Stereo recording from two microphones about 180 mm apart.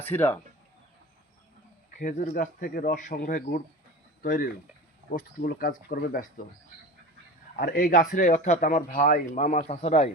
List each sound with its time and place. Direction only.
0.0 s speech: 10° left (ahead or behind)
2.0 s speech: 50° left (ahead or behind)
7.6 s speech: 55° left (ahead or behind); by 10.1 s 35° left (ahead or behind)